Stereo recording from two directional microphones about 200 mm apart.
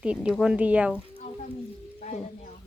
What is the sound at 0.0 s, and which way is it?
Speech, 5° right (ahead or behind).